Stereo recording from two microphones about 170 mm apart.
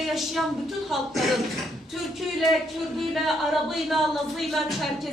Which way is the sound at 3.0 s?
Centre (ahead or behind).